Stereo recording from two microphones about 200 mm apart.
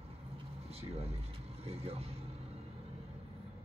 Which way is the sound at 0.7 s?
30° right (ahead or behind).